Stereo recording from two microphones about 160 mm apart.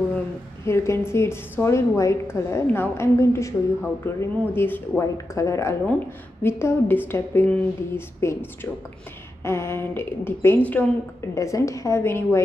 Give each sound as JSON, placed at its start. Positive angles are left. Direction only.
{"t": 0.7, "sound": "a woman's voice", "side_deg": 15}